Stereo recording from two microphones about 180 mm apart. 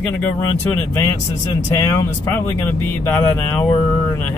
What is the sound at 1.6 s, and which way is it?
Speech, 15° left (ahead or behind).